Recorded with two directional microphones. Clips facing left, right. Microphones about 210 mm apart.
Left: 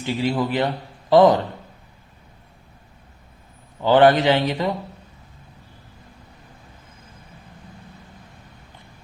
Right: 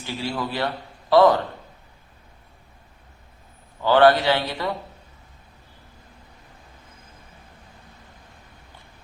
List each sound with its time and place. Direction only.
0.0 s a man's voice: 20° left (ahead or behind)
3.8 s a man's voice: 20° left (ahead or behind)